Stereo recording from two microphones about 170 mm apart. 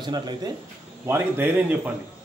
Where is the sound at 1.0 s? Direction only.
10° right (ahead or behind).